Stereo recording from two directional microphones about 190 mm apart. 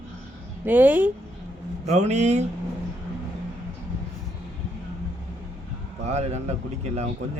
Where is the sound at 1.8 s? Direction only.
35° right (ahead or behind).